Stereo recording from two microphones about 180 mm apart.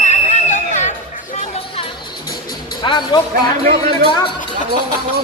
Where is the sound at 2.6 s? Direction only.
25° left (ahead or behind).